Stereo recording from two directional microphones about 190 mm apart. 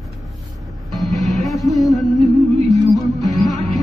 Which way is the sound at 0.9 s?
Centre (ahead or behind).